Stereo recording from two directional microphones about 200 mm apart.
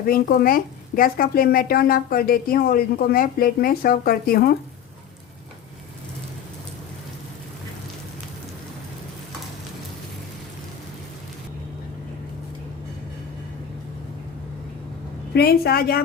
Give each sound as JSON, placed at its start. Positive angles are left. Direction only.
{"t": 0.1, "sound": "speech", "side_deg": 50}
{"t": 15.3, "sound": "speech", "side_deg": 50}